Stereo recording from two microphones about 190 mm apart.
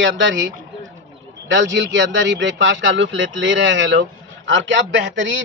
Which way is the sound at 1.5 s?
75° right (ahead or behind).